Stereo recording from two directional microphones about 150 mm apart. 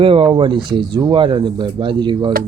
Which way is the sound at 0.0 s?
35° right (ahead or behind).